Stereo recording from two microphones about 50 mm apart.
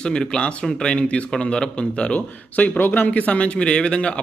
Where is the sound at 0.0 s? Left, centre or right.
Centre.